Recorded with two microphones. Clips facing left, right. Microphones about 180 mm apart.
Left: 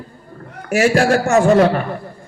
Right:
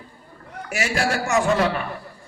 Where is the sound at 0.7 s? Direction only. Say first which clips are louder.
Left 10 dB; 50° left (ahead or behind).